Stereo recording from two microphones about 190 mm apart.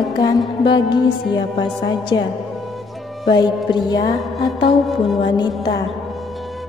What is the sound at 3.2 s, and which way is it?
Speech, 25° left (ahead or behind).